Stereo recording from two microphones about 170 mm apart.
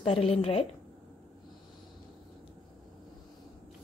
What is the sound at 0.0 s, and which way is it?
Speech, 35° left (ahead or behind).